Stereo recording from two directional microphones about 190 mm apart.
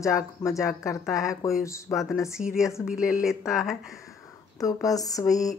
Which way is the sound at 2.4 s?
35° left (ahead or behind).